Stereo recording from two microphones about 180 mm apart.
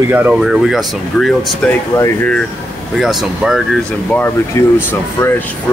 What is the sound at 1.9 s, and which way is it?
Speech, 15° left (ahead or behind).